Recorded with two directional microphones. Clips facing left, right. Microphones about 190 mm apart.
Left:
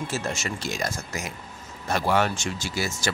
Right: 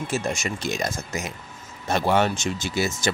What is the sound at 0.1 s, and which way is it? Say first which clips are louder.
Speech: right 3 dB; 15° right (ahead or behind).